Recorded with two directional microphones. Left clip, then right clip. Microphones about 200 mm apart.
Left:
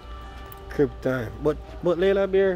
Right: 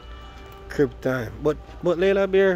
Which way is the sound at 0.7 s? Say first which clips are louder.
Right 1 dB; 15° right (ahead or behind).